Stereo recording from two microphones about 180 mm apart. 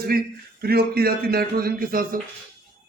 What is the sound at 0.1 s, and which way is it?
A man's voice, 55° right (ahead or behind).